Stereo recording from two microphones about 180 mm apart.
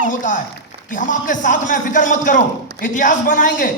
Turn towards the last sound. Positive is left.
turn(degrees=50)  # may be behind; listen again after turning